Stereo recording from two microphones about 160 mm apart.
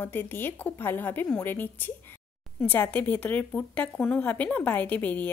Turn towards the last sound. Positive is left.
turn(degrees=10)  # may be behind; listen again after turning